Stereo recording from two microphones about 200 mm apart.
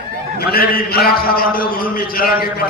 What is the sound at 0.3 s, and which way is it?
A man's voice, 50° left (ahead or behind).